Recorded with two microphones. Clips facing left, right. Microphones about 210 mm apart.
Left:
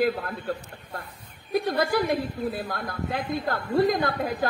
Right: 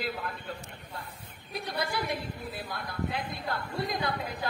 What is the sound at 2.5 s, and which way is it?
A woman's voice, 45° left (ahead or behind).